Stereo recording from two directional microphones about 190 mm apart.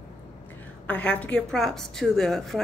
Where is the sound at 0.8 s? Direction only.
5° left (ahead or behind).